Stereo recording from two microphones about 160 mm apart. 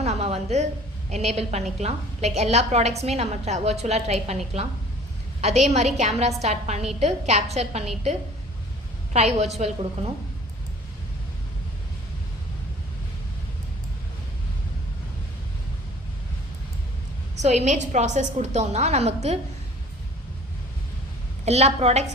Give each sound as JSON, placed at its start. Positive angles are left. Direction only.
{"t": 0.0, "sound": "a sound", "side_deg": -40}
{"t": 1.1, "sound": "a woman's voice", "side_deg": -45}
{"t": 5.4, "sound": "a woman's voice", "side_deg": -45}
{"t": 9.1, "sound": "a woman's voice", "side_deg": -40}
{"t": 17.3, "sound": "a woman's voice", "side_deg": -45}
{"t": 21.4, "sound": "a woman's voice", "side_deg": -40}